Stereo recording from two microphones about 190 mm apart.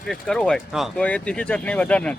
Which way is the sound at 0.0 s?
Centre (ahead or behind).